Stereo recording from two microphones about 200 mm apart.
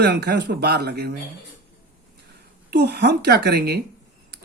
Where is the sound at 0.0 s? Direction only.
55° right (ahead or behind).